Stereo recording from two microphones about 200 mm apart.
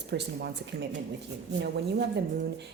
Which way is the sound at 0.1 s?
55° right (ahead or behind).